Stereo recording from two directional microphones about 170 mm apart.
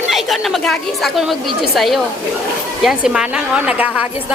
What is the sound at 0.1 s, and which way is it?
A woman's voice, centre (ahead or behind).